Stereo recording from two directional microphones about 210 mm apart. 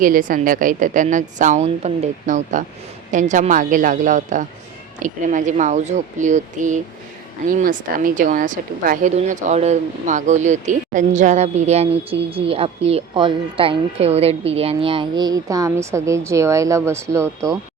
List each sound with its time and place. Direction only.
0.0 s a woman's voice: 40° right (ahead or behind); by 17.6 s 15° right (ahead or behind)